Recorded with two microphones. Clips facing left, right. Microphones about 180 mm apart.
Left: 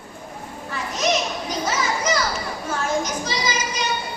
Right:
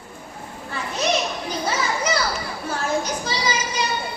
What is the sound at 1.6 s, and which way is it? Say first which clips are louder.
Children playing: even; 30° right (ahead or behind).